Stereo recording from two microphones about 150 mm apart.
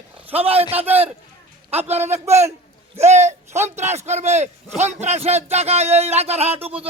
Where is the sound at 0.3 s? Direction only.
40° right (ahead or behind).